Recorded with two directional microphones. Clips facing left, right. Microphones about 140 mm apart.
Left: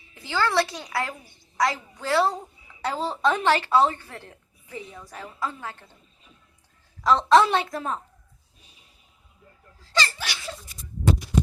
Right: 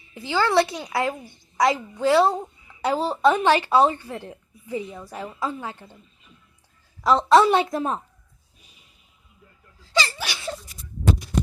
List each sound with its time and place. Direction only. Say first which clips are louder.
0.1 s speech: right 4 dB; 15° right (ahead or behind)
7.0 s speech: right 2 dB; 10° right (ahead or behind)
9.9 s laughter: right 2 dB; 15° right (ahead or behind)